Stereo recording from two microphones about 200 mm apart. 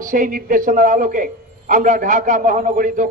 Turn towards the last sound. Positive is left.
turn(degrees=-40)  # may be behind; listen again after turning